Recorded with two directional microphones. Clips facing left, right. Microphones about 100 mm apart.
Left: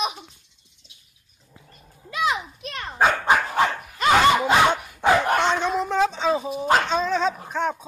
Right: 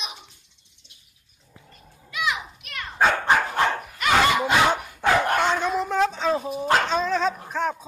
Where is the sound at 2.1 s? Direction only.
35° left (ahead or behind).